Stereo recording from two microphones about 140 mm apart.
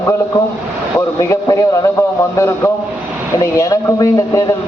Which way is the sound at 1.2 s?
20° left (ahead or behind).